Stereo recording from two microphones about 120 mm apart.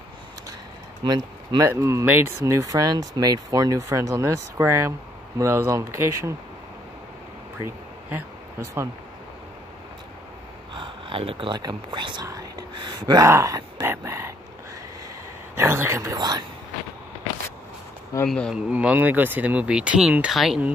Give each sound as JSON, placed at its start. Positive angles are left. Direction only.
{"t": 1.0, "sound": "speech", "side_deg": -35}
{"t": 1.7, "sound": "speech", "side_deg": -25}
{"t": 7.6, "sound": "a sound", "side_deg": -20}
{"t": 10.7, "sound": "speech", "side_deg": -45}
{"t": 12.3, "sound": "a sound", "side_deg": -30}
{"t": 13.8, "sound": "speech", "side_deg": -20}
{"t": 15.5, "sound": "speech", "side_deg": -20}
{"t": 18.2, "sound": "speech", "side_deg": 10}
{"t": 18.7, "sound": "speech", "side_deg": -10}